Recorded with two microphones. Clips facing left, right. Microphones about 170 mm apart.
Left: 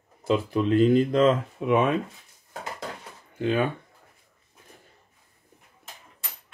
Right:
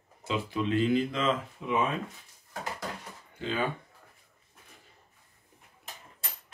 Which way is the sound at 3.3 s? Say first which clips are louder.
Left 8 dB; 55° left (ahead or behind).